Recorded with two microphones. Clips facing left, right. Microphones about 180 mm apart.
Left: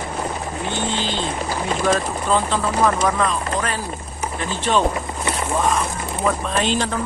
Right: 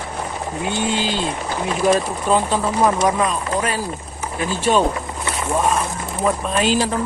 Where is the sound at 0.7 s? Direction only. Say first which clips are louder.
Right 3 dB; 10° right (ahead or behind).